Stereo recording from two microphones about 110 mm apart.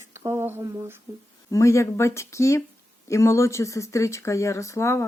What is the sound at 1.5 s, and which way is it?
Speech, 25° left (ahead or behind).